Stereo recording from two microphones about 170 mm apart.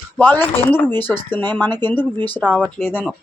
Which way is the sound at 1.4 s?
25° right (ahead or behind).